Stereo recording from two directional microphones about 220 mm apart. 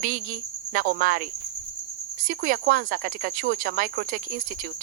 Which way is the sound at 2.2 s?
40° right (ahead or behind).